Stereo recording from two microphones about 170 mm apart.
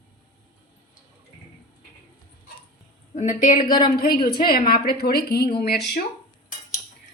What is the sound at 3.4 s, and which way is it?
Speech, 55° left (ahead or behind).